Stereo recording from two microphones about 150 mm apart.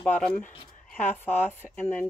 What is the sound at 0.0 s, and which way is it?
Speech, 10° left (ahead or behind).